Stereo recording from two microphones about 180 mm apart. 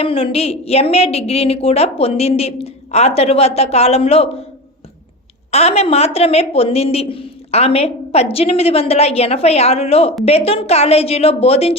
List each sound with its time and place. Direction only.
0.0 s a woman's voice: 30° left (ahead or behind)
5.5 s a woman's voice: 35° left (ahead or behind)